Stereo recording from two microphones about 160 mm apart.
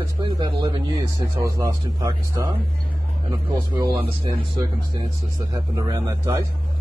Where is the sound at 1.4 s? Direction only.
20° right (ahead or behind).